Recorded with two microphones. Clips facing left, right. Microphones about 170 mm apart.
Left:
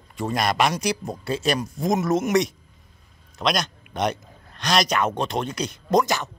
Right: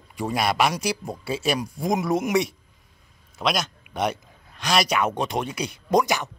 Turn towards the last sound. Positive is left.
turn(degrees=-10)  # may be behind; listen again after turning